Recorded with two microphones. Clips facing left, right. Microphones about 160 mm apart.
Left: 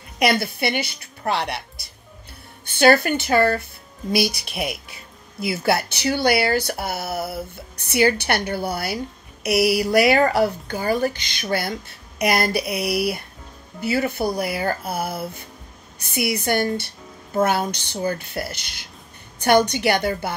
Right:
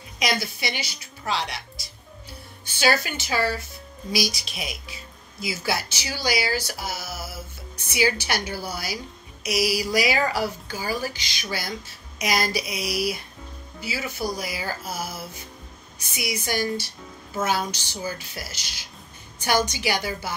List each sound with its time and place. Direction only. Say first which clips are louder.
0.2 s speech: left 7 dB; 60° left (ahead or behind)